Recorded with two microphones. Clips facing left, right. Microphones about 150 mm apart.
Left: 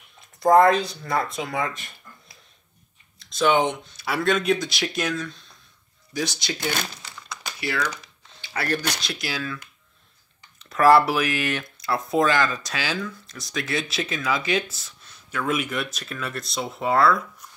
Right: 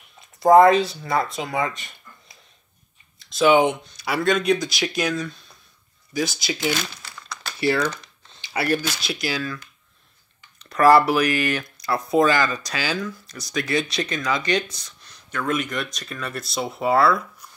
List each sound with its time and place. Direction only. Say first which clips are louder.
0.2 s speech: right 3 dB; centre (ahead or behind)
3.2 s typing: right 4 dB; 5° right (ahead or behind)
3.9 s speech: right 2 dB; centre (ahead or behind)
7.0 s crumpling: right 1 dB; 15° left (ahead or behind)
7.6 s speech: right 7 dB; 30° right (ahead or behind)
8.4 s a sound: right 4 dB; 10° right (ahead or behind)
9.0 s speech: right 4 dB; centre (ahead or behind)
10.6 s speech: right 1 dB; centre (ahead or behind)